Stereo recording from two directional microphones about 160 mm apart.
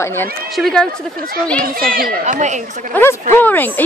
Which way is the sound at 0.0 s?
15° left (ahead or behind).